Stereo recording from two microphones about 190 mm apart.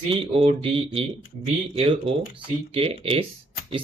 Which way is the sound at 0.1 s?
30° right (ahead or behind).